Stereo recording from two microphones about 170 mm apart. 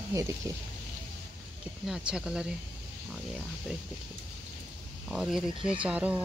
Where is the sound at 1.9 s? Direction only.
5° right (ahead or behind).